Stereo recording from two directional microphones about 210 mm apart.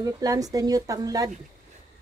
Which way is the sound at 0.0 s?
15° right (ahead or behind).